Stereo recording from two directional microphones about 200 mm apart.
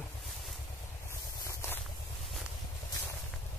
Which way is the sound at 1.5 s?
15° left (ahead or behind).